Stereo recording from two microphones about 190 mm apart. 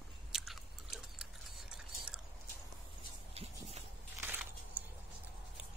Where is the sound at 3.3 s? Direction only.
30° right (ahead or behind).